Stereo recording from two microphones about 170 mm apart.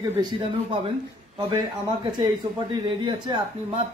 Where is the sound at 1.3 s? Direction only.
25° right (ahead or behind).